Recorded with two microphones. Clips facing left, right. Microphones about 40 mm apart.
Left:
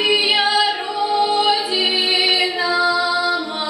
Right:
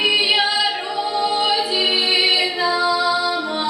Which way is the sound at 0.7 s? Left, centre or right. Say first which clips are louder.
Left 1 dB; centre.